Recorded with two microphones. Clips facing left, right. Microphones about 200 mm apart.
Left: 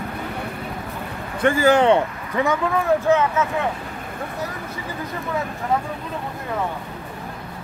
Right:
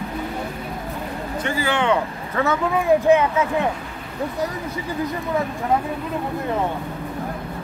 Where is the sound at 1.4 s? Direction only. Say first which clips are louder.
Left 7 dB; 45° left (ahead or behind).